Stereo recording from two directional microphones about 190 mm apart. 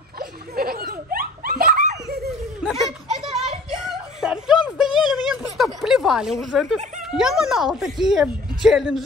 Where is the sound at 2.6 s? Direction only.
Centre (ahead or behind).